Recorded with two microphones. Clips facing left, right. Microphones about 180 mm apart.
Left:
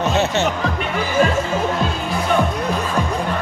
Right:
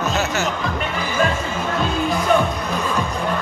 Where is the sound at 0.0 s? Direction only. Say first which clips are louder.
Left 3 dB; 30° left (ahead or behind).